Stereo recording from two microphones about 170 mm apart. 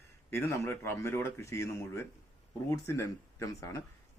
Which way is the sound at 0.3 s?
15° left (ahead or behind).